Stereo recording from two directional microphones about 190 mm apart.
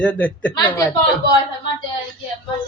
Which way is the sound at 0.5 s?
20° left (ahead or behind).